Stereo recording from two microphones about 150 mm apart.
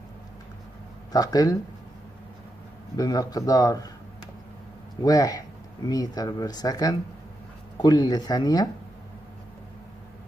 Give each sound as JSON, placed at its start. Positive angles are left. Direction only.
{"t": 1.1, "sound": "speech", "side_deg": 25}
{"t": 3.0, "sound": "speech", "side_deg": 25}
{"t": 5.0, "sound": "speech", "side_deg": 25}